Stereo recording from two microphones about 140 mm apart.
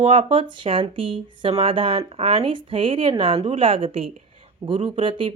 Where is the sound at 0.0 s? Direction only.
40° right (ahead or behind).